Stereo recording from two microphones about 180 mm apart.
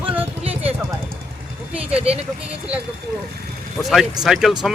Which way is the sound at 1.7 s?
5° right (ahead or behind).